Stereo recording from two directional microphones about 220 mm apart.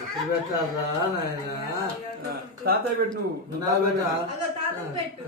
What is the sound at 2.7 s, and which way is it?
Speech, 45° right (ahead or behind).